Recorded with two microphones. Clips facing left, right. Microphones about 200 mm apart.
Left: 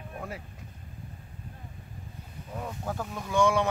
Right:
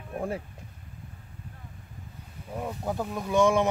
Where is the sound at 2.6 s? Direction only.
15° right (ahead or behind).